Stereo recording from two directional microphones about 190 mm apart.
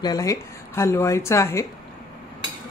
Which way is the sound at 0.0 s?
20° left (ahead or behind).